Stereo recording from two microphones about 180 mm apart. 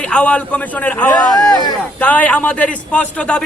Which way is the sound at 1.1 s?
20° left (ahead or behind).